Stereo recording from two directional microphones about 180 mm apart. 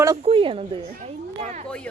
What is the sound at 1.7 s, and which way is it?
Speech, 5° left (ahead or behind).